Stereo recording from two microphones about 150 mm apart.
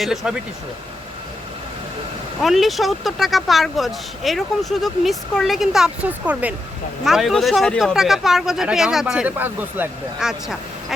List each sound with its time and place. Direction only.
0.0 s speech: centre (ahead or behind)
2.4 s speech: centre (ahead or behind)